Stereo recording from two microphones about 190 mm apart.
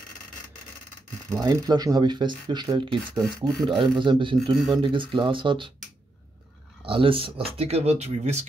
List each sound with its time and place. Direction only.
1.3 s speech: 20° right (ahead or behind)
6.9 s speech: 30° right (ahead or behind)